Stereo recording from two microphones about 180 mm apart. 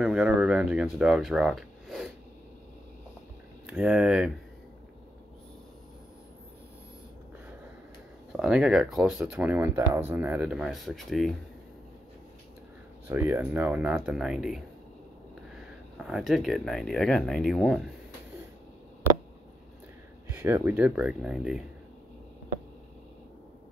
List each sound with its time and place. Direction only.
0.0 s speech: 5° right (ahead or behind)
3.6 s speech: 5° right (ahead or behind)
8.3 s speech: 5° right (ahead or behind)
13.1 s speech: 10° right (ahead or behind)
16.0 s speech: 5° right (ahead or behind)
20.3 s speech: 10° right (ahead or behind)